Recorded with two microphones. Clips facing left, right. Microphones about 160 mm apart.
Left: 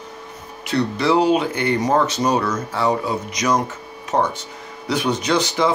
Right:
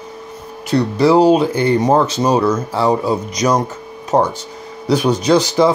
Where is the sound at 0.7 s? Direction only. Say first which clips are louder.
Right 6 dB; 40° right (ahead or behind).